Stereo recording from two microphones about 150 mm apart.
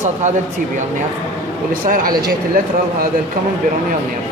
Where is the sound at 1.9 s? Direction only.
70° right (ahead or behind).